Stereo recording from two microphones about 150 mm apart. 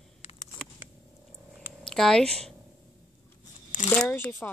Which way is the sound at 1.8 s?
5° left (ahead or behind).